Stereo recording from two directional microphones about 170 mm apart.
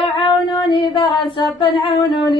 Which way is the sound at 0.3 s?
25° left (ahead or behind).